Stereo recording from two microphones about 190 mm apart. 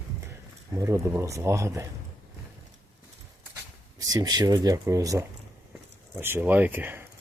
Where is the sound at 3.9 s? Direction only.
20° right (ahead or behind).